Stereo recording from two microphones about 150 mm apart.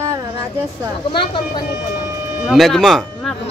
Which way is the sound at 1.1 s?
35° left (ahead or behind).